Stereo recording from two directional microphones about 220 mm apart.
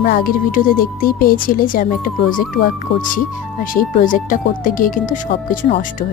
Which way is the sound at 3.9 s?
40° left (ahead or behind).